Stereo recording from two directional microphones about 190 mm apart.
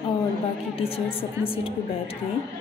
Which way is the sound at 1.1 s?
30° left (ahead or behind).